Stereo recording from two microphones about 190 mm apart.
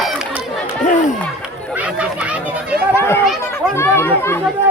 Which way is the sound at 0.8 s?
40° left (ahead or behind).